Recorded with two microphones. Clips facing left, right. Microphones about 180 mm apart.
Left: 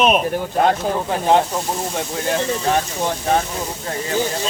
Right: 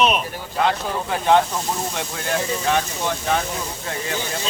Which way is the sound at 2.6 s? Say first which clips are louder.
Left 2 dB; 35° left (ahead or behind).